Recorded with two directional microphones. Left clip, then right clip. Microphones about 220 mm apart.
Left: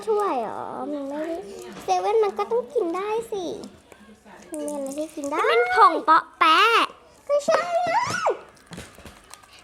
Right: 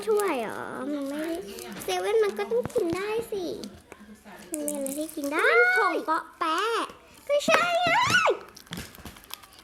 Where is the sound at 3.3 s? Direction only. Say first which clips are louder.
Left 2 dB; 30° left (ahead or behind).